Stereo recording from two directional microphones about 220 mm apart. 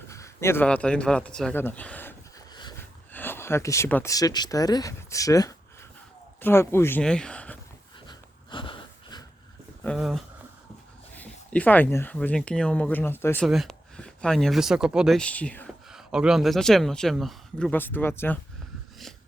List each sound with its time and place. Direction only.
0.1 s a man's voice: 15° left (ahead or behind)
8.0 s dog: 20° left (ahead or behind)
9.8 s speech: centre (ahead or behind)
11.2 s speech: 5° left (ahead or behind)